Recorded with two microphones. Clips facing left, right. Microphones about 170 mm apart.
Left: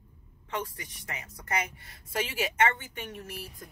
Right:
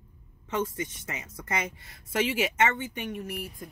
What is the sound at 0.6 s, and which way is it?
Speech, 20° right (ahead or behind).